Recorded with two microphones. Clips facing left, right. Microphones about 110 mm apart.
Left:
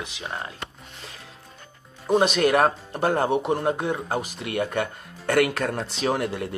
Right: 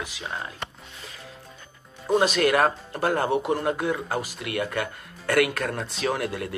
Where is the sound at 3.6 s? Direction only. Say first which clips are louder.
Left 1 dB; 30° left (ahead or behind).